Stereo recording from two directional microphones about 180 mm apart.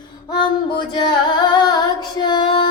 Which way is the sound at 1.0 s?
25° left (ahead or behind).